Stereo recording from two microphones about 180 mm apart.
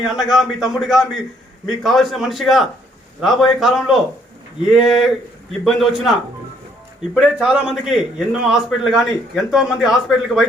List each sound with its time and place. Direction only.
0.0 s a man's voice: centre (ahead or behind)